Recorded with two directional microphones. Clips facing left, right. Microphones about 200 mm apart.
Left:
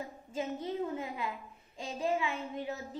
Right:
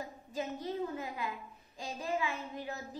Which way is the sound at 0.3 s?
25° left (ahead or behind).